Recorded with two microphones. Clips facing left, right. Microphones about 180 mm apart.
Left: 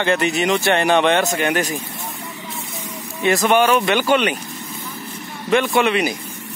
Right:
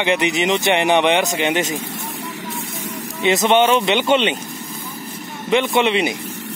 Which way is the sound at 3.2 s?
20° right (ahead or behind).